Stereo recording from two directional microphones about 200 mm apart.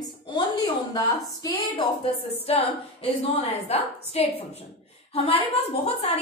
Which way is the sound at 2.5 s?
30° left (ahead or behind).